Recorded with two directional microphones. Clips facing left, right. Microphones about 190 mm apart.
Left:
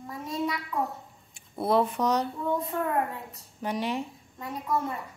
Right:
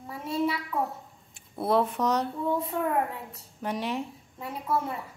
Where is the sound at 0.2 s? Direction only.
30° right (ahead or behind).